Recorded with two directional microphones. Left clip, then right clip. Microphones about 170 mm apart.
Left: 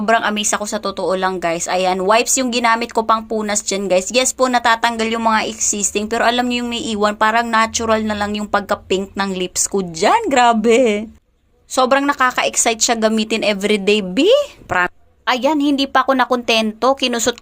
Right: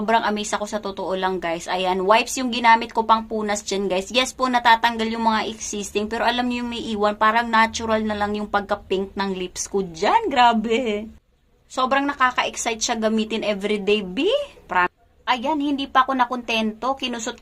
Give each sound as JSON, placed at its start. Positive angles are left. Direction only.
{"t": 0.0, "sound": "speech", "side_deg": 25}